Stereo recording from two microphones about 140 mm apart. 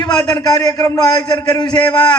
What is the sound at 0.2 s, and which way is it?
A man's voice, 30° left (ahead or behind).